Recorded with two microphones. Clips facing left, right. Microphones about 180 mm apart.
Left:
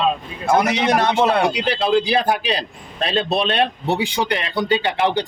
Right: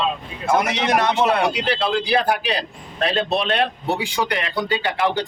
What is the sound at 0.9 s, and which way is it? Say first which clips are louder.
A man's voice: right 1 dB; 30° left (ahead or behind).